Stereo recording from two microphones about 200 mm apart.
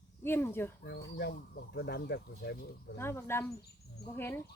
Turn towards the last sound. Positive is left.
turn(degrees=10)  # may be behind; listen again after turning